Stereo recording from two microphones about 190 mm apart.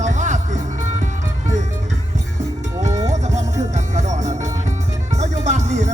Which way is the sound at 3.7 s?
40° right (ahead or behind).